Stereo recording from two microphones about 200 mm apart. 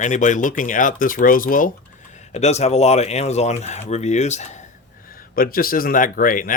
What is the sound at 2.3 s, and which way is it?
Speech, 35° left (ahead or behind).